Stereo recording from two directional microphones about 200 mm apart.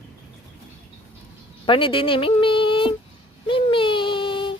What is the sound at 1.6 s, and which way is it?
A woman's voice, 25° left (ahead or behind).